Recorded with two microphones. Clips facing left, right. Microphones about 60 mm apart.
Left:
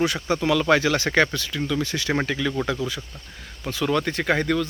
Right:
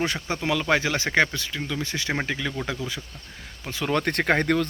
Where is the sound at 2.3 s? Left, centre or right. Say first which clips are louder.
Left 3 dB; centre.